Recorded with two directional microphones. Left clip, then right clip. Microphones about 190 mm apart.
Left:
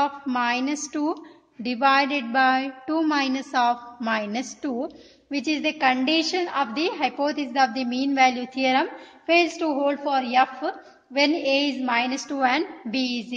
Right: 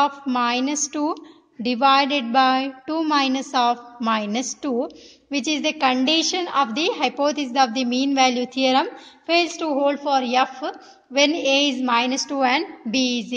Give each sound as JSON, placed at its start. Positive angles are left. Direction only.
{"t": 0.0, "sound": "a woman's voice", "side_deg": -25}